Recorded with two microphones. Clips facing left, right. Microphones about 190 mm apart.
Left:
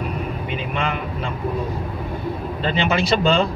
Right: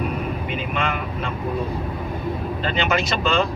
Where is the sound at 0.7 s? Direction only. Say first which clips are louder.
Left 1 dB; 30° left (ahead or behind).